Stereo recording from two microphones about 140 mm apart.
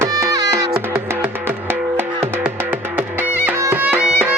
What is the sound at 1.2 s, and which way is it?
Music, 15° right (ahead or behind).